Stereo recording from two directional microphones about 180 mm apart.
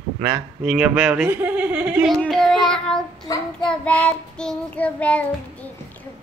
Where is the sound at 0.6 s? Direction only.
5° right (ahead or behind).